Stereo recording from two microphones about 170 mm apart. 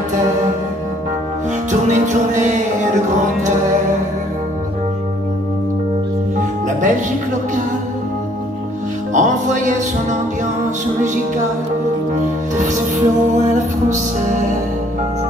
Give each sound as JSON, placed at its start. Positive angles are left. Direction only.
{"t": 1.7, "sound": "music", "side_deg": -45}
{"t": 9.1, "sound": "music", "side_deg": -45}
{"t": 12.5, "sound": "music", "side_deg": -45}